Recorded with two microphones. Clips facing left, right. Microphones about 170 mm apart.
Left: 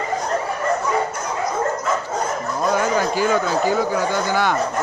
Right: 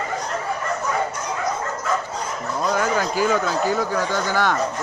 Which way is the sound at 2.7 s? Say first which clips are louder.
Left 2 dB; 5° left (ahead or behind).